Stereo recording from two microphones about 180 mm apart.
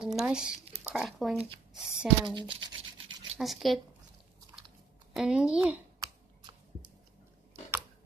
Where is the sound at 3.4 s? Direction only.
Centre (ahead or behind).